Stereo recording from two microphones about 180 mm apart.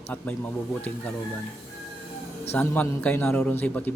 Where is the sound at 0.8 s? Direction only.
5° left (ahead or behind).